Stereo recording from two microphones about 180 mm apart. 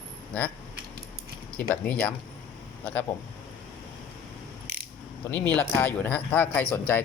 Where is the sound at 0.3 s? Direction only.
10° left (ahead or behind).